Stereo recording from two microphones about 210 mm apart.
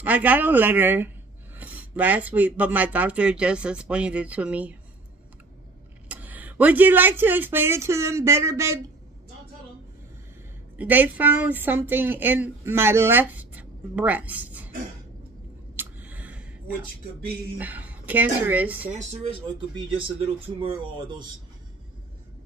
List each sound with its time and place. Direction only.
0.0 s a woman's voice: 5° right (ahead or behind)
6.0 s speech: 5° right (ahead or behind)
10.8 s a woman's voice: 10° right (ahead or behind)
15.7 s a sound: 10° right (ahead or behind)
17.6 s a woman's voice: 10° right (ahead or behind)
18.9 s speech: 35° right (ahead or behind)